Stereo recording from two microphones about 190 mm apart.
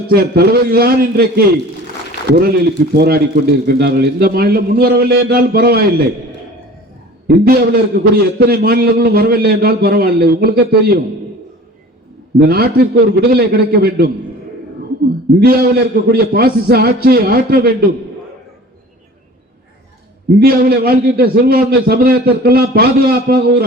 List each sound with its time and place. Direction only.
0.1 s a man's voice: 55° right (ahead or behind)
7.3 s a man's voice: 50° right (ahead or behind)
12.4 s a man's voice: 55° right (ahead or behind)
15.4 s a man's voice: 55° right (ahead or behind)
20.4 s a man's voice: 55° right (ahead or behind)